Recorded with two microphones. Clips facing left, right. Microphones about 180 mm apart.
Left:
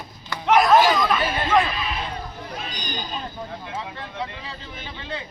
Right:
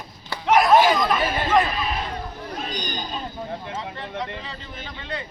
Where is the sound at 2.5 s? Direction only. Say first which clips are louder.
Right 3 dB; 40° right (ahead or behind).